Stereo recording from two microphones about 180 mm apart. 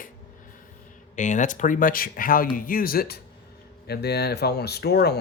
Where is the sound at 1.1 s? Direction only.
45° left (ahead or behind).